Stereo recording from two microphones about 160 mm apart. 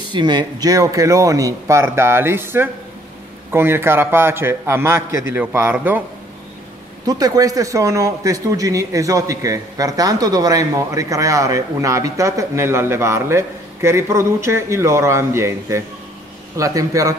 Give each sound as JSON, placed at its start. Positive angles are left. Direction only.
{"t": 0.1, "sound": "a man's voice", "side_deg": -30}
{"t": 7.1, "sound": "speech", "side_deg": -25}